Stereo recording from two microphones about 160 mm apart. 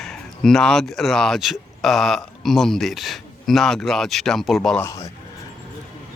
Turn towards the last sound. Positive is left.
turn(degrees=20)  # may be behind; listen again after turning